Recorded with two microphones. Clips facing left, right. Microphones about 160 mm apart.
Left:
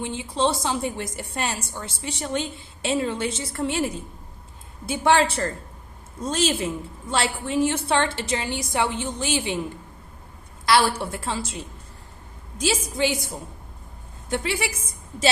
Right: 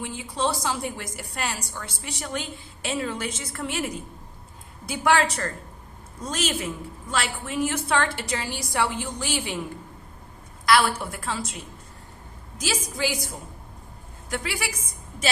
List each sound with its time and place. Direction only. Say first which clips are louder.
0.0 s a woman's voice: left 3 dB; 25° left (ahead or behind)
10.7 s a woman's voice: left 1 dB; 30° left (ahead or behind)
14.3 s a woman's voice: left 4 dB; 25° left (ahead or behind)